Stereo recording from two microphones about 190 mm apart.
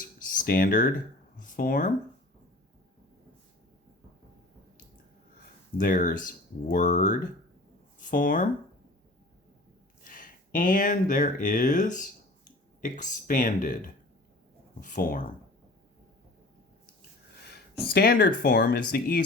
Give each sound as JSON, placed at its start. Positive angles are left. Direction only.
{"t": 0.3, "sound": "speech", "side_deg": 45}
{"t": 5.7, "sound": "speech", "side_deg": 45}
{"t": 10.0, "sound": "speech", "side_deg": 45}
{"t": 17.9, "sound": "speech", "side_deg": 50}